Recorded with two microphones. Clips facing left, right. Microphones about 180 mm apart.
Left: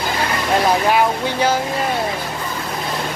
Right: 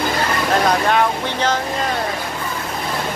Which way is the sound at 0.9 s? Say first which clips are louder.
Left 1 dB; 10° left (ahead or behind).